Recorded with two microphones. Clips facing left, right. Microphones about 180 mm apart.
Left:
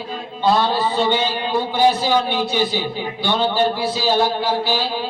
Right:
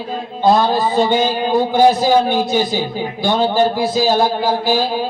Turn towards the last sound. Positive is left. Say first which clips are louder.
# right 4 dB
turn(degrees=-45)  # may be behind; listen again after turning